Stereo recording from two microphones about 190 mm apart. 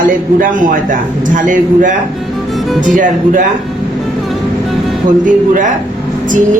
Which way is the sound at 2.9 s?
45° right (ahead or behind).